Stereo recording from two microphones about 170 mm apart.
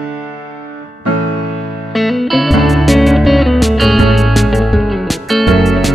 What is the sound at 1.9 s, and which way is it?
Music, centre (ahead or behind).